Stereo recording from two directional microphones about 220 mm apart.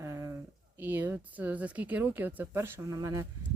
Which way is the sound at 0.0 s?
15° right (ahead or behind).